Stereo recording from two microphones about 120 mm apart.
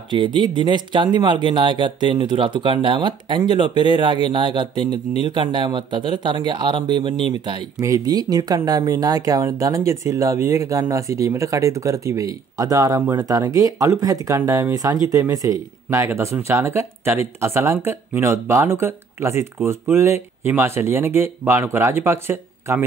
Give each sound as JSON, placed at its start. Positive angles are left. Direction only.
{"t": 0.1, "sound": "speech", "side_deg": -40}
{"t": 7.8, "sound": "speech", "side_deg": -30}